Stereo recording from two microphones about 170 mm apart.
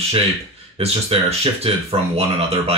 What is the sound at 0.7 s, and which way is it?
Speech, 35° right (ahead or behind).